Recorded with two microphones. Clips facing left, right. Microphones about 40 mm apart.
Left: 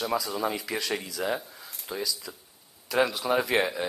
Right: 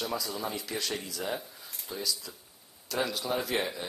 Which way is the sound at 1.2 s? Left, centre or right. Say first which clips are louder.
Left 5 dB; centre.